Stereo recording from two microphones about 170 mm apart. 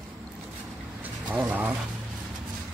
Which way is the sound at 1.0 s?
10° right (ahead or behind).